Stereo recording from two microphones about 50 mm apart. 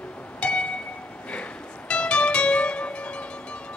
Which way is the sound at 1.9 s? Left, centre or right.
Left.